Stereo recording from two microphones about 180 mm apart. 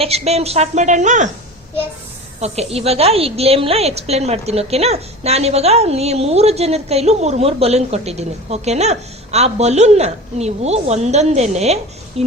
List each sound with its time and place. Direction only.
0.0 s a woman's voice: 35° right (ahead or behind)
2.4 s a woman's voice: 35° right (ahead or behind)